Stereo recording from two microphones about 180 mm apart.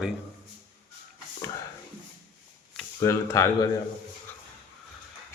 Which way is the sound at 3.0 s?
15° left (ahead or behind).